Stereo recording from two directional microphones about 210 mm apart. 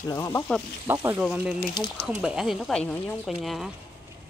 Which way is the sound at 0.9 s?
10° right (ahead or behind).